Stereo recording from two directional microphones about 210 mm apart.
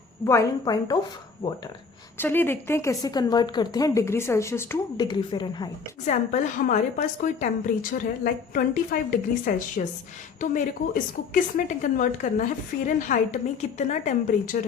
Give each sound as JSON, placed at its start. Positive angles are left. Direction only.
{"t": 0.3, "sound": "a woman's voice", "side_deg": 15}
{"t": 2.1, "sound": "a woman's voice", "side_deg": 10}
{"t": 6.1, "sound": "a woman's voice", "side_deg": 35}